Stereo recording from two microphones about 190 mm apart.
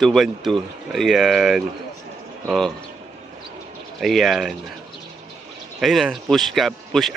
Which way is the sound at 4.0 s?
Centre (ahead or behind).